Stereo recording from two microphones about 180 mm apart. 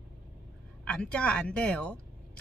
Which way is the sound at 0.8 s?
5° left (ahead or behind).